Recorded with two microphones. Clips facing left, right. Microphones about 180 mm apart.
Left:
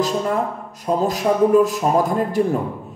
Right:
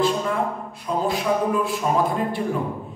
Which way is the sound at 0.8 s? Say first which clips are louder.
Left 4 dB; 40° left (ahead or behind).